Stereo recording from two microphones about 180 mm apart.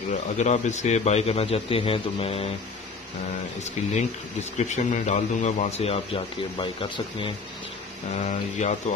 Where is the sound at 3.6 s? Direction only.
40° left (ahead or behind).